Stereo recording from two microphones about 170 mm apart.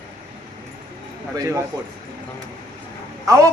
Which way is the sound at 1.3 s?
20° right (ahead or behind).